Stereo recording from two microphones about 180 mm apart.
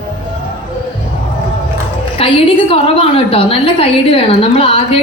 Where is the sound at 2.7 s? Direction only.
30° left (ahead or behind).